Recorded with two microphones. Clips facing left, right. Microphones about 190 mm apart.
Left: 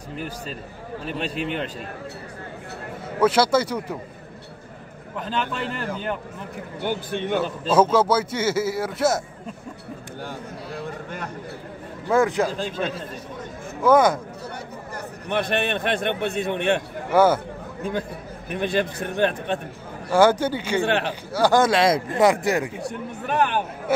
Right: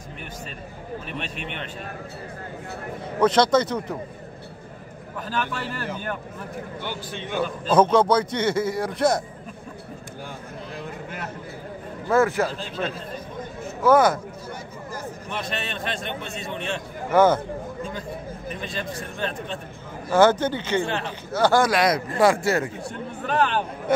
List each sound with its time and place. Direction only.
1.0 s speech: 35° left (ahead or behind)
3.2 s speech: 10° left (ahead or behind)
5.2 s a man's voice: 20° left (ahead or behind)
6.8 s a man's voice: 55° left (ahead or behind)
7.7 s a man's voice: 5° left (ahead or behind)
12.1 s speech: 15° left (ahead or behind)
15.2 s a man's voice: 60° left (ahead or behind)
17.1 s speech: 10° left (ahead or behind)
18.5 s a man's voice: 65° left (ahead or behind)
20.1 s speech: 10° left (ahead or behind)
20.8 s speech: 70° left (ahead or behind)
21.3 s a man's voice: 15° left (ahead or behind)